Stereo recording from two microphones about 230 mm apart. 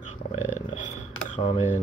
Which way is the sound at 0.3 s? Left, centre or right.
Left.